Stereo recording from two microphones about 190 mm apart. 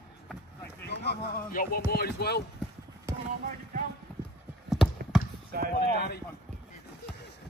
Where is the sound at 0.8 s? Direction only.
60° left (ahead or behind).